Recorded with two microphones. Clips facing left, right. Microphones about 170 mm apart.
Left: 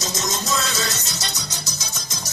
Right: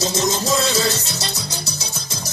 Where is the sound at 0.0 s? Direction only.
30° right (ahead or behind).